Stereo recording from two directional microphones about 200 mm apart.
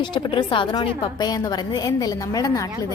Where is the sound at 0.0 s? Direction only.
20° left (ahead or behind).